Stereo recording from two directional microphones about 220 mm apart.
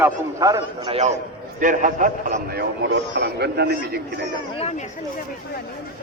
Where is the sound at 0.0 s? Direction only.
15° right (ahead or behind); by 4.0 s 45° right (ahead or behind).